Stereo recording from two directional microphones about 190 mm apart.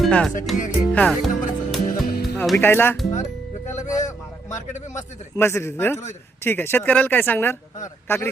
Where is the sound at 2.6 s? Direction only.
10° left (ahead or behind).